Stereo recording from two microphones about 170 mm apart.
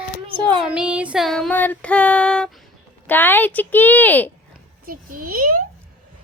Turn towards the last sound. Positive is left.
turn(degrees=-55)  # may be behind; listen again after turning